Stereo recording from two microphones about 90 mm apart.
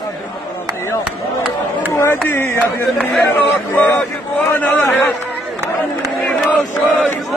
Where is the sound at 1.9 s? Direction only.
30° left (ahead or behind).